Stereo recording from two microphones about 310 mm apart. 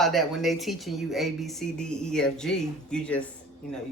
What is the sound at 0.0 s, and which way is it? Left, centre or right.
Speech, centre.